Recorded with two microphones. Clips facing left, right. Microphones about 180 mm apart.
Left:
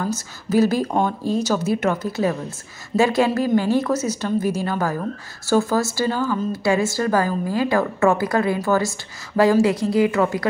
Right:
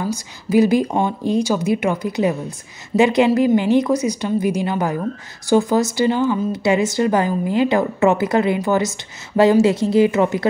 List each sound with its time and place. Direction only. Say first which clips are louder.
0.0 s a woman's voice: right 1 dB; 15° right (ahead or behind)